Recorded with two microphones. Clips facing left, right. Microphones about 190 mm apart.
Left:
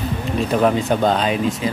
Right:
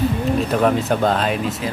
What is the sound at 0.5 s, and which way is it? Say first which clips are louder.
Speech: left 3 dB; centre (ahead or behind).